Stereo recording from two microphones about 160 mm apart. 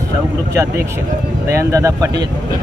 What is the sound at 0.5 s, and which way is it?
Speech, 15° right (ahead or behind).